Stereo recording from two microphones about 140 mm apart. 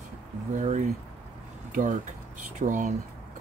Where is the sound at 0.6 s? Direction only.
60° right (ahead or behind).